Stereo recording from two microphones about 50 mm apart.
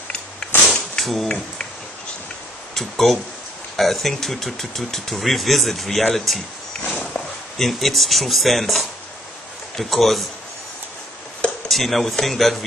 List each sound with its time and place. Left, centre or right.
0.7 s a sound: centre
2.7 s speech: centre
7.5 s speech: centre
11.7 s speech: centre